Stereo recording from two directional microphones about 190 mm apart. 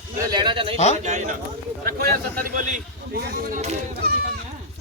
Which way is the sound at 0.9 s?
40° right (ahead or behind).